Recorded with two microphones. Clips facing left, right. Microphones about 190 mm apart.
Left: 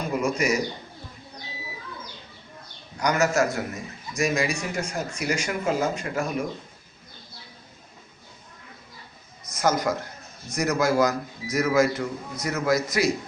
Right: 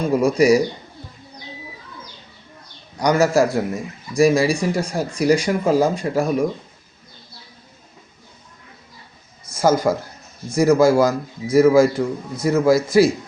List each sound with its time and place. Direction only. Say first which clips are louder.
0.0 s speech: right 9 dB; 35° right (ahead or behind)
3.0 s speech: right 6 dB; 35° right (ahead or behind)
9.5 s a man's voice: right 7 dB; 30° right (ahead or behind)